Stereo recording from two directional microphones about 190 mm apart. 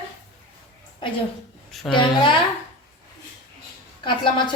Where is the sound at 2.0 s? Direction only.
25° left (ahead or behind).